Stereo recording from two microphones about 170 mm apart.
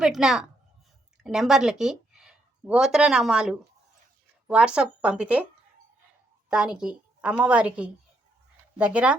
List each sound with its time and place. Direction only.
0.0 s a woman's voice: 5° right (ahead or behind)
6.5 s a woman's voice: 5° right (ahead or behind)